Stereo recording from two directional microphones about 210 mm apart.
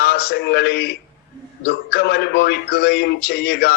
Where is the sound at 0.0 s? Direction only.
50° left (ahead or behind).